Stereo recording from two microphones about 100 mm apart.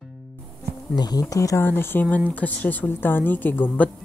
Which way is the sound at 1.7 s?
20° left (ahead or behind).